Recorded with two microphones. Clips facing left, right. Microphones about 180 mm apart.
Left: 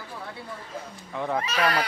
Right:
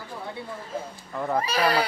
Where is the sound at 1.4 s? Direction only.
35° right (ahead or behind).